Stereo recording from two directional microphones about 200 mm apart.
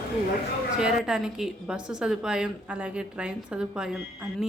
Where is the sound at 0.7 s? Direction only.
5° right (ahead or behind).